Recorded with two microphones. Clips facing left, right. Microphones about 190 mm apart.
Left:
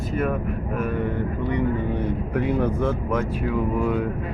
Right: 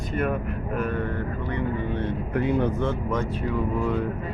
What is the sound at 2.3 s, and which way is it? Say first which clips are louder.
Speech: even; centre (ahead or behind).